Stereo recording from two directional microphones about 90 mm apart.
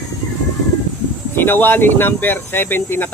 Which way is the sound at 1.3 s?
25° left (ahead or behind).